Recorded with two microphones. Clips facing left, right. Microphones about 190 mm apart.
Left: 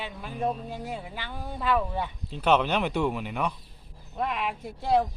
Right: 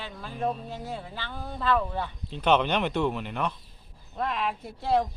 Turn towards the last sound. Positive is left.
turn(degrees=5)  # may be behind; listen again after turning